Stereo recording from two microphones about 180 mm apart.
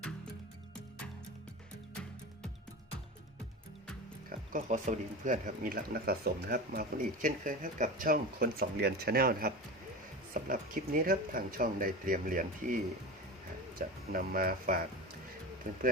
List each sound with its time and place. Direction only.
4.3 s speech: 45° right (ahead or behind)
10.5 s speech: 50° right (ahead or behind)